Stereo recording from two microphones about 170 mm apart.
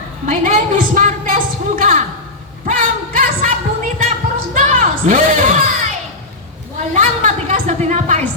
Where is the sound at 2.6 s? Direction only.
50° right (ahead or behind).